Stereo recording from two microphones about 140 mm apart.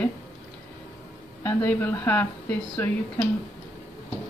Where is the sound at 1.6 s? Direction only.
15° left (ahead or behind).